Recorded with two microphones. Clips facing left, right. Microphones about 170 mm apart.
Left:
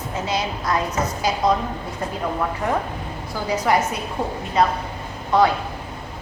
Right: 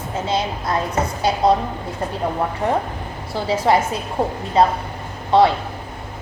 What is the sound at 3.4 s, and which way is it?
Speech, 30° right (ahead or behind).